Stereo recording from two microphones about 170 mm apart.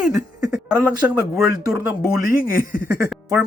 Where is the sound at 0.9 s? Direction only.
10° right (ahead or behind).